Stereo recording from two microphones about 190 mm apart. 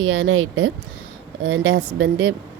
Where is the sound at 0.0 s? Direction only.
90° right.